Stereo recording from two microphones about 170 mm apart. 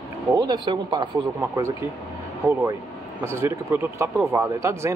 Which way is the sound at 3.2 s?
15° right (ahead or behind).